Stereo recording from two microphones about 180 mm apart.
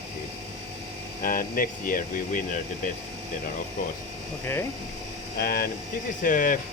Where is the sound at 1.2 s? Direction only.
50° left (ahead or behind).